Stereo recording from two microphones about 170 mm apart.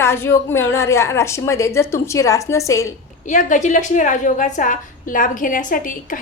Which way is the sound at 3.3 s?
45° left (ahead or behind).